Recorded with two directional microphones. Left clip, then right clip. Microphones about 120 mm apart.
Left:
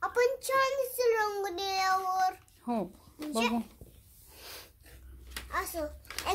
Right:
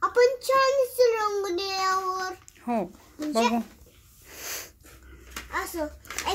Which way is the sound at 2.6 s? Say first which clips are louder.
Right 6 dB; 10° left (ahead or behind).